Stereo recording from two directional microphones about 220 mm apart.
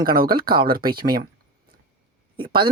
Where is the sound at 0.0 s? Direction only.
40° right (ahead or behind).